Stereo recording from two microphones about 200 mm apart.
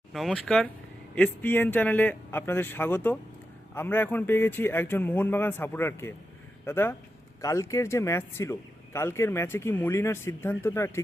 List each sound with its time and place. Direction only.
0.1 s speech: centre (ahead or behind)